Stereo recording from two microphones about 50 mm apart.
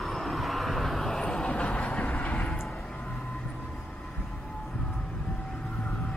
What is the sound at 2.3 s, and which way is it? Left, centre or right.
Vehicle, centre.